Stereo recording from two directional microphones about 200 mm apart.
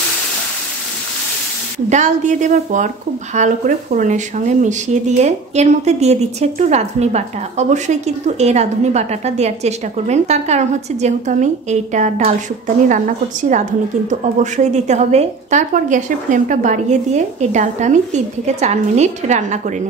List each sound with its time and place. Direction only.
1.9 s speech: 35° right (ahead or behind)